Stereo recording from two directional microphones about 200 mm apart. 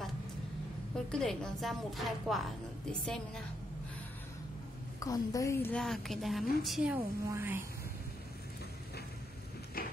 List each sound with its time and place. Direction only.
0.9 s a woman's voice: 5° left (ahead or behind)
5.0 s a woman's voice: 15° left (ahead or behind); by 7.6 s 10° right (ahead or behind)
9.8 s a sound: 45° left (ahead or behind)